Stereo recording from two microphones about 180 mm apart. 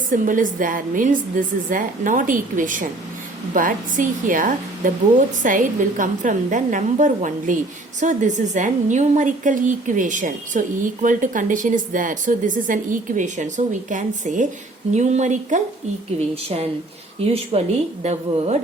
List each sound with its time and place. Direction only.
0.1 s a woman's voice: 45° right (ahead or behind)